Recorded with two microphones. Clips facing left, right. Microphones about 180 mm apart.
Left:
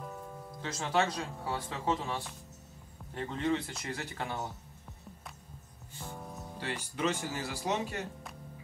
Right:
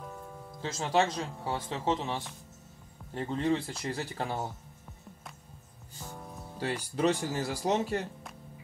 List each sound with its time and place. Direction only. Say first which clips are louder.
0.0 s music: even; centre (ahead or behind)
0.6 s speech: right 3 dB; 30° right (ahead or behind)
5.9 s music: left 1 dB; centre (ahead or behind)
6.6 s speech: right 5 dB; 35° right (ahead or behind)